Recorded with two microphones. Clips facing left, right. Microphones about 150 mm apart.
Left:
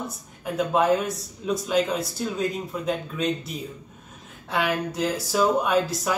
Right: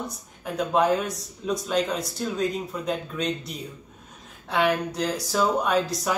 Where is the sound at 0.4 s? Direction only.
Centre (ahead or behind).